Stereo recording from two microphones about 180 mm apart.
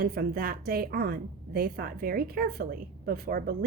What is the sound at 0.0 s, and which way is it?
A woman's voice, 55° right (ahead or behind).